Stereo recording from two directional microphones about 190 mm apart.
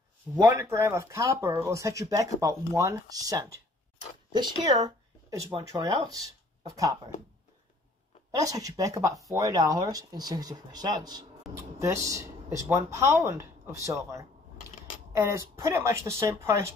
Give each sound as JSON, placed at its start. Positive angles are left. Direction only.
{"t": 0.4, "sound": "speech", "side_deg": -15}
{"t": 8.3, "sound": "speech", "side_deg": -20}
{"t": 11.4, "sound": "speech", "side_deg": 0}
{"t": 11.8, "sound": "speech", "side_deg": -15}